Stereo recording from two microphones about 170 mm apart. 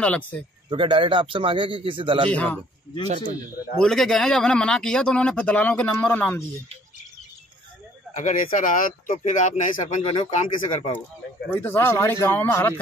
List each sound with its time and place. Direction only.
0.0 s speech: 5° left (ahead or behind)
0.7 s a man's voice: 30° right (ahead or behind)
2.3 s speech: 5° left (ahead or behind)
3.7 s speech: 5° left (ahead or behind)
8.2 s speech: 50° left (ahead or behind)
11.5 s speech: 10° left (ahead or behind)